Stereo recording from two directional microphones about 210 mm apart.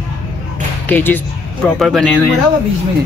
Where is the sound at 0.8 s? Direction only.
10° left (ahead or behind).